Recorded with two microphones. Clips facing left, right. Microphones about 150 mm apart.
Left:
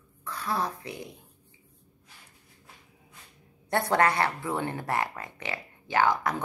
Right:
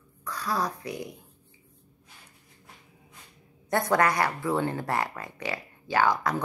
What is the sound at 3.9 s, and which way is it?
Speech, 30° left (ahead or behind).